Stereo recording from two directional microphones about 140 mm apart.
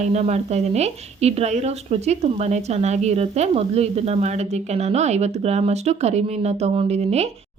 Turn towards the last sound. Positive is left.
turn(degrees=-50)  # may be behind; listen again after turning